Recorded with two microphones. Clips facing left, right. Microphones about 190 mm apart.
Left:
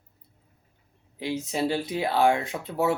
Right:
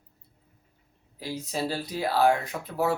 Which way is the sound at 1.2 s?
20° left (ahead or behind).